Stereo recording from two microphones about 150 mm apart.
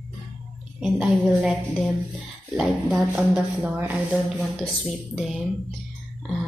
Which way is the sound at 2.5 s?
5° right (ahead or behind).